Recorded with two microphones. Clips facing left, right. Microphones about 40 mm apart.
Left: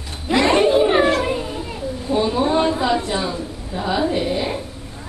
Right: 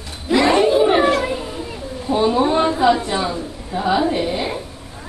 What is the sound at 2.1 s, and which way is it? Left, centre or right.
A woman's voice, centre.